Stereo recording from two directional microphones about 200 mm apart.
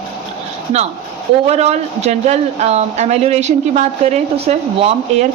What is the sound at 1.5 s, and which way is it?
Speech, 35° right (ahead or behind).